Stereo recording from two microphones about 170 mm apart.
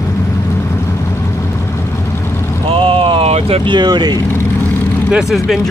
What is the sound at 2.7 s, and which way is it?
Vehicle, 35° right (ahead or behind).